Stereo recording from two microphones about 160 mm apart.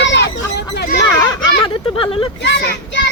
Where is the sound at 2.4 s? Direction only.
90° left.